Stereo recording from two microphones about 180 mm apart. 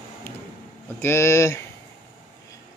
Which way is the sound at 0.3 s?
10° left (ahead or behind).